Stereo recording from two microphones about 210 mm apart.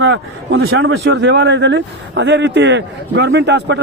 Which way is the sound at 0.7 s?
65° right (ahead or behind).